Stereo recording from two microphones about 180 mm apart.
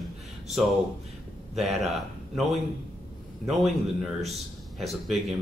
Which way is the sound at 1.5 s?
Centre (ahead or behind).